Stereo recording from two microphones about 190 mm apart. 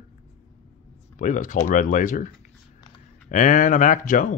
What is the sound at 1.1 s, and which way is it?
Speech, 40° left (ahead or behind).